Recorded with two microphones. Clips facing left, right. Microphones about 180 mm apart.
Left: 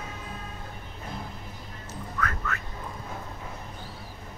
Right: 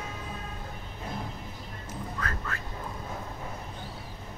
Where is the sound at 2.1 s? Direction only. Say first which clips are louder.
Left 6 dB; 30° right (ahead or behind).